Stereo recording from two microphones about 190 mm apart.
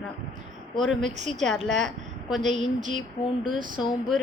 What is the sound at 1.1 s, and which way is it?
Speech, 40° right (ahead or behind).